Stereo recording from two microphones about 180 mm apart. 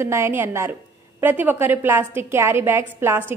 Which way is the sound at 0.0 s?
15° right (ahead or behind).